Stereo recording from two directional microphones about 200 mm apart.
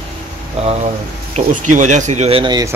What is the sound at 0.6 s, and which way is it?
A man's voice, 35° right (ahead or behind).